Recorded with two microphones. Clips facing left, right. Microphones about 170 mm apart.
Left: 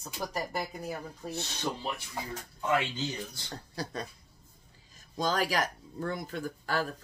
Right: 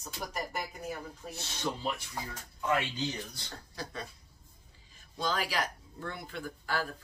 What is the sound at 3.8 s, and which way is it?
Speech, 40° left (ahead or behind).